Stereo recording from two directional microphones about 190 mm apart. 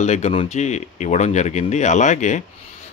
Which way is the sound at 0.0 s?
35° left (ahead or behind).